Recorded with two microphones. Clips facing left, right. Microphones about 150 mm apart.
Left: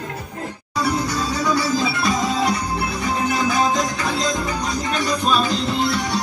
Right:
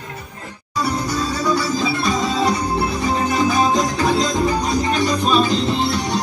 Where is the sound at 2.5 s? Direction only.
40° right (ahead or behind).